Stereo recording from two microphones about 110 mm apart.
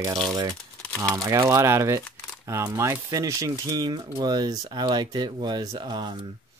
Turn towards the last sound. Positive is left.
turn(degrees=-40)  # may be behind; listen again after turning